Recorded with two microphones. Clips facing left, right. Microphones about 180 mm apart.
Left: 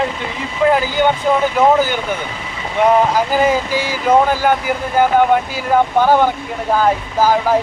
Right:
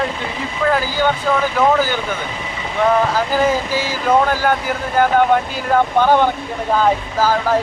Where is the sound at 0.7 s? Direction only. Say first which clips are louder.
Left 2 dB; 20° left (ahead or behind).